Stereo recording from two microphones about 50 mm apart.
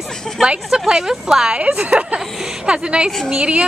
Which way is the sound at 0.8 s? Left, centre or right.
Centre.